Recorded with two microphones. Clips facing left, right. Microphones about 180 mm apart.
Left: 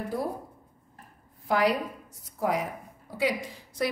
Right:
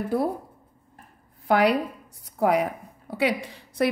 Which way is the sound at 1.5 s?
65° right (ahead or behind).